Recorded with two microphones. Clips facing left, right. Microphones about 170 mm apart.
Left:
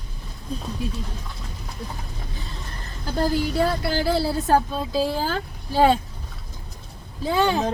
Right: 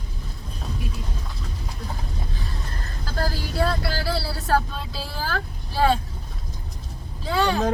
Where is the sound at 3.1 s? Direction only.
20° left (ahead or behind).